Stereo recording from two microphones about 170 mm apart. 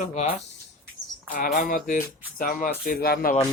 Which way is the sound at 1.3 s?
55° left (ahead or behind).